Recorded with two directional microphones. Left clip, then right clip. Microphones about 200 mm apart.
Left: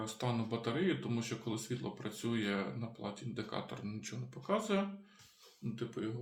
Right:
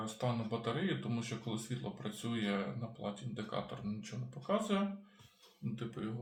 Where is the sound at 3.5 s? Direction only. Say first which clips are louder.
Right 1 dB; 40° left (ahead or behind).